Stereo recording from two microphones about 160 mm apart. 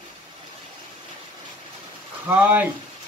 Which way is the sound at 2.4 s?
10° right (ahead or behind).